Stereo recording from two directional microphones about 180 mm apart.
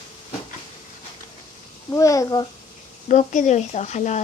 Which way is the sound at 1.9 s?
20° left (ahead or behind).